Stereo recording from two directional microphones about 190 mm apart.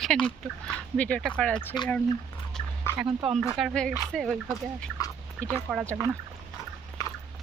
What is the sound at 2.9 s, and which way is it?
Speech, 5° right (ahead or behind).